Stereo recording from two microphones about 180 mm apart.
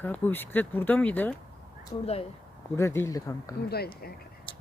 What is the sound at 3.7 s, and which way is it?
Speech, 60° left (ahead or behind).